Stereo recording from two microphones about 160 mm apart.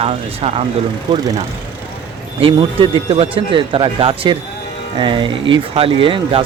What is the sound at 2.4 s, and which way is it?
Speech, 35° right (ahead or behind).